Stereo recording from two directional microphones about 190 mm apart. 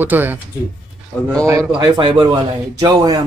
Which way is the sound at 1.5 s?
15° right (ahead or behind).